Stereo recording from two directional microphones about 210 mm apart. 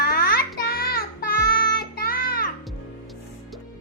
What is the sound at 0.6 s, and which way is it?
Child singing, 45° left (ahead or behind).